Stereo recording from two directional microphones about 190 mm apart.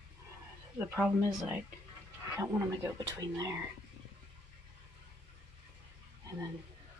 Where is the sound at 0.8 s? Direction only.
10° right (ahead or behind).